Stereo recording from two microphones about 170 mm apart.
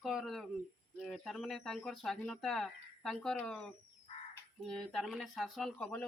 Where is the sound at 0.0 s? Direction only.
Centre (ahead or behind).